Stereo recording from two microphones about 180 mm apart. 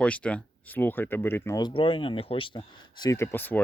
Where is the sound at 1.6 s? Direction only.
25° left (ahead or behind).